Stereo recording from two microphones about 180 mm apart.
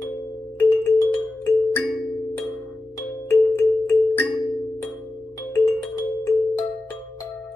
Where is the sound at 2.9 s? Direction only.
10° left (ahead or behind).